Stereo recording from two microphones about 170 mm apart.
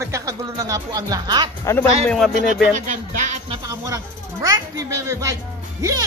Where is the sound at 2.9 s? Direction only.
45° right (ahead or behind).